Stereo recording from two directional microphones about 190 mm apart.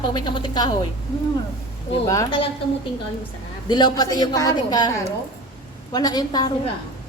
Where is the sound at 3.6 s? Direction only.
20° left (ahead or behind).